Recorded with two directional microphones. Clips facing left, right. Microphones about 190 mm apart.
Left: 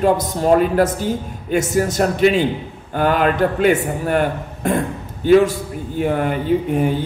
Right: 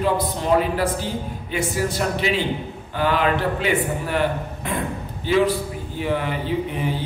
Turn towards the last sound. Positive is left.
turn(degrees=50)  # may be behind; listen again after turning